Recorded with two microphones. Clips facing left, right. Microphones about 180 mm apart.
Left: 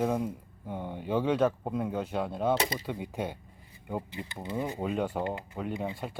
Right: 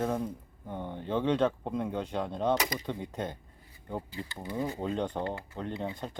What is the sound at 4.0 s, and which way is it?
Speech, 20° left (ahead or behind).